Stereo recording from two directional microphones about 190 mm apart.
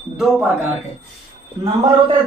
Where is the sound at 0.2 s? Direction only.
5° right (ahead or behind).